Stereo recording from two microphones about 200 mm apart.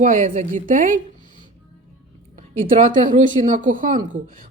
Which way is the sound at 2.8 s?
40° right (ahead or behind).